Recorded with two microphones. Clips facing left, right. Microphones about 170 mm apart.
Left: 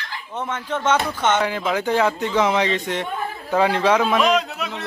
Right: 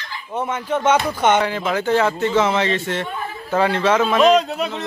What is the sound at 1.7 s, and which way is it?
A man's voice, 10° left (ahead or behind).